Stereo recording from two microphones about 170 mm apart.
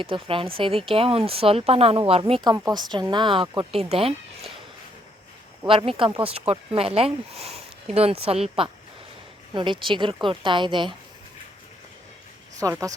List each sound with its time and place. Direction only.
0.0 s speech: 30° right (ahead or behind)
5.6 s a woman's voice: 30° right (ahead or behind)
12.5 s a woman's voice: 20° right (ahead or behind)